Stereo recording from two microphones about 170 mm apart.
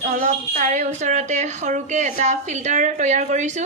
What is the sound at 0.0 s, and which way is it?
A woman's voice, 50° right (ahead or behind).